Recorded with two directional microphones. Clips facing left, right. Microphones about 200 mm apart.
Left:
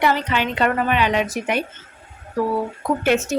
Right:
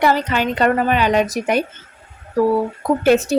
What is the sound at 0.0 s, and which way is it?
A woman's voice, 40° right (ahead or behind).